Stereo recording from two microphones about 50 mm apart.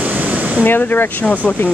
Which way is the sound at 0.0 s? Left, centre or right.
Right.